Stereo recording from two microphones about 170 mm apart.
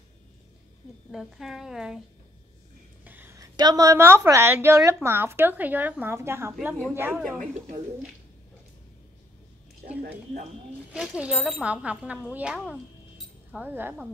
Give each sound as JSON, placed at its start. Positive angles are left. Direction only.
{"t": 1.1, "sound": "a woman's voice", "side_deg": 0}
{"t": 3.0, "sound": "a sound", "side_deg": -10}
{"t": 3.5, "sound": "speech", "side_deg": -20}
{"t": 10.9, "sound": "speech", "side_deg": -5}